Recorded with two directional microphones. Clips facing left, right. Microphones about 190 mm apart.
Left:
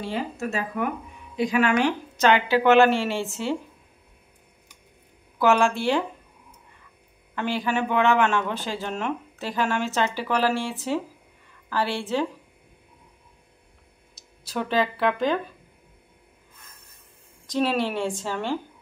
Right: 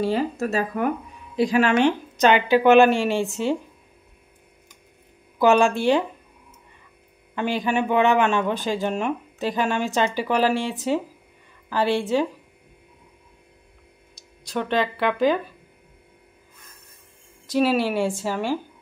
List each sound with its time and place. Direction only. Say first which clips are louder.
0.0 s speech: right 6 dB; 40° right (ahead or behind); by 3.5 s 15° right (ahead or behind)
5.4 s speech: right 3 dB; 15° right (ahead or behind)
7.3 s speech: right 3 dB; 15° right (ahead or behind)
14.4 s speech: right 1 dB; 5° left (ahead or behind)
17.5 s speech: right 4 dB; 5° right (ahead or behind)